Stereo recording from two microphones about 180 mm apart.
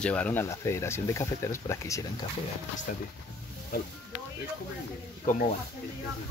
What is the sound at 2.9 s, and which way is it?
Speech, 50° left (ahead or behind).